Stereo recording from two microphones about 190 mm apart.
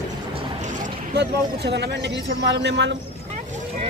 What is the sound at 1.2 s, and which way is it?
Speech, 65° right (ahead or behind).